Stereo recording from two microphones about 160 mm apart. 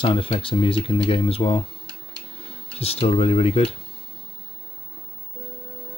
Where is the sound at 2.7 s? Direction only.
40° left (ahead or behind).